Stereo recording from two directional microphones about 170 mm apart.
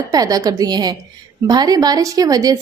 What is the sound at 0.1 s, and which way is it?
A woman's voice, 20° right (ahead or behind).